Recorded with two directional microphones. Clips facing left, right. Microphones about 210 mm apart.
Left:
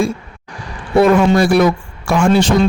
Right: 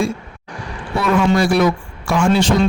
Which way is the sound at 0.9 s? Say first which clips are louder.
Left 5 dB; 55° left (ahead or behind).